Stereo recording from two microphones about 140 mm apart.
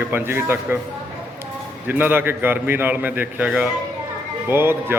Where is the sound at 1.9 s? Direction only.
15° right (ahead or behind).